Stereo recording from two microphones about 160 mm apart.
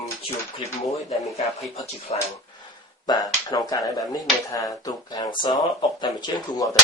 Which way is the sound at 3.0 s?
25° left (ahead or behind).